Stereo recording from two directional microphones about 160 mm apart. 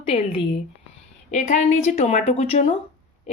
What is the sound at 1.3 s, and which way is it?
A woman's voice, 45° left (ahead or behind).